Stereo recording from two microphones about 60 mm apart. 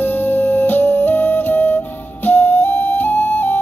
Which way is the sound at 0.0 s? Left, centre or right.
Left.